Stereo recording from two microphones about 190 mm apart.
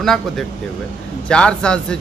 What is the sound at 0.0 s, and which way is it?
Speech, centre (ahead or behind).